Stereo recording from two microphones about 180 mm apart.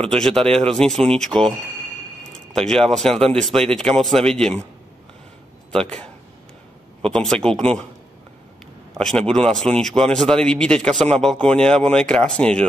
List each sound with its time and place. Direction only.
0.1 s speech: centre (ahead or behind)
0.4 s speech: 30° right (ahead or behind)
0.7 s speech: centre (ahead or behind)
2.5 s speech: centre (ahead or behind)
5.7 s speech: 5° left (ahead or behind)
7.1 s speech: 5° left (ahead or behind)
8.9 s a man's voice: 5° left (ahead or behind)